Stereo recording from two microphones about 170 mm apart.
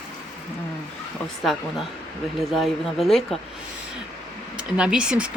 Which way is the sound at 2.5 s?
Centre (ahead or behind).